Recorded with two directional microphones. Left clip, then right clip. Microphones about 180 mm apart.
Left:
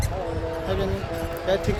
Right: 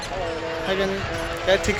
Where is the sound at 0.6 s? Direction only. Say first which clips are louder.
Right 5 dB; 15° right (ahead or behind).